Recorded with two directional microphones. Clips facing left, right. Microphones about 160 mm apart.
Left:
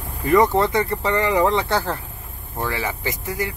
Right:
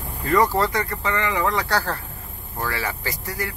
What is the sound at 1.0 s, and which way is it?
Speech, 35° left (ahead or behind).